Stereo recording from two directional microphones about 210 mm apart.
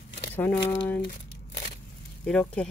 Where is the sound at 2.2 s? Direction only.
5° left (ahead or behind).